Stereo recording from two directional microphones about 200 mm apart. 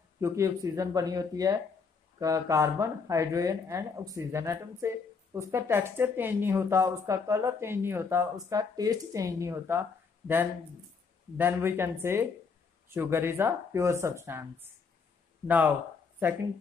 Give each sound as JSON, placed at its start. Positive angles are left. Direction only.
{"t": 0.2, "sound": "speech", "side_deg": -15}
{"t": 15.4, "sound": "speech", "side_deg": -10}